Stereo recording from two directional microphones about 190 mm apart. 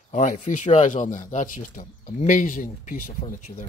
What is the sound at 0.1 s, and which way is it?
Speech, 40° left (ahead or behind).